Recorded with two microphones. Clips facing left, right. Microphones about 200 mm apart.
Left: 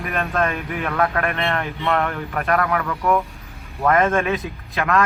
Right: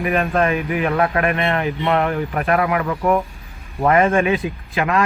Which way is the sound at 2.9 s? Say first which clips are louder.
Right 2 dB; 25° right (ahead or behind).